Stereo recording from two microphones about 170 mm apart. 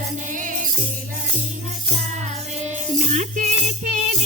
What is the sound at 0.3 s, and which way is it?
Jingle bell, 50° right (ahead or behind).